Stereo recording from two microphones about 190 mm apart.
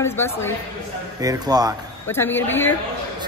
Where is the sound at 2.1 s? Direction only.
10° left (ahead or behind).